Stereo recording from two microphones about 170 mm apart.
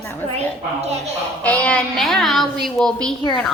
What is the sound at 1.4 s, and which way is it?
A woman's voice, 10° left (ahead or behind).